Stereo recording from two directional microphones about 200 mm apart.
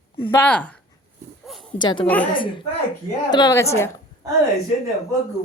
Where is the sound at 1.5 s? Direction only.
Centre (ahead or behind).